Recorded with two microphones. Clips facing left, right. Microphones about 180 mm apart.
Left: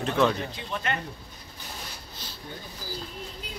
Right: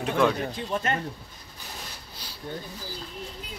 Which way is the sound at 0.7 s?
40° right (ahead or behind).